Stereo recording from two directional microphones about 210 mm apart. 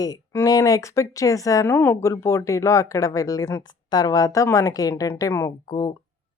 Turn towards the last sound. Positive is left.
turn(degrees=15)  # may be behind; listen again after turning